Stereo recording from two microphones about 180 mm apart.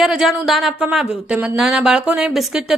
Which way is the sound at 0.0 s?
Centre (ahead or behind).